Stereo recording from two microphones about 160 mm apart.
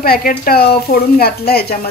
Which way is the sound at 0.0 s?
65° left (ahead or behind).